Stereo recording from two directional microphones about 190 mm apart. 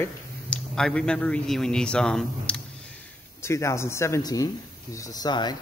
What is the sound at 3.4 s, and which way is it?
Speech, 15° left (ahead or behind).